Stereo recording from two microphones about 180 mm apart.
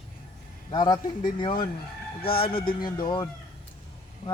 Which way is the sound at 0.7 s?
25° left (ahead or behind).